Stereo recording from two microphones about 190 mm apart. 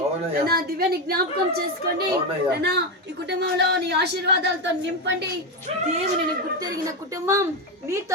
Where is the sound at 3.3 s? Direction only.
60° right (ahead or behind).